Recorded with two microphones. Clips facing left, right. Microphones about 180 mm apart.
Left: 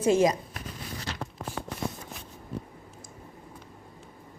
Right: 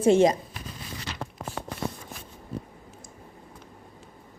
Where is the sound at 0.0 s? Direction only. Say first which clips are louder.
Right 3 dB; 30° right (ahead or behind).